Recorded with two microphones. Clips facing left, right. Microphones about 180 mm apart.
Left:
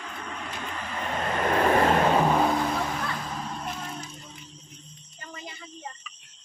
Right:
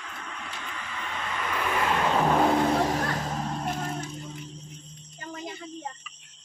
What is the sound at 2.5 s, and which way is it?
Vehicle, 35° right (ahead or behind).